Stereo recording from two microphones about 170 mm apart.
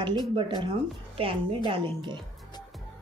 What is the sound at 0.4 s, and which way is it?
A woman's voice, 25° right (ahead or behind).